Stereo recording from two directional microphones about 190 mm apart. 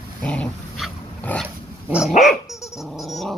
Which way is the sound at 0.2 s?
5° left (ahead or behind).